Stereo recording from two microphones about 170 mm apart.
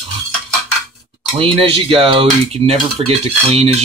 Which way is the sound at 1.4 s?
35° right (ahead or behind).